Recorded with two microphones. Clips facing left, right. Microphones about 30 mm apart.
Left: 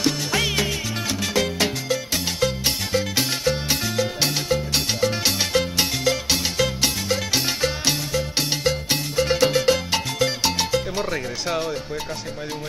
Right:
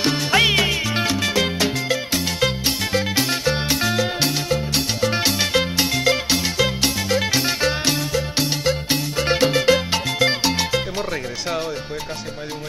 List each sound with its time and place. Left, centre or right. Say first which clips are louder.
0.0 s music: right 5 dB; right
5.1 s music: right 2 dB; right
9.2 s music: right 1 dB; right
11.0 s speech: even; centre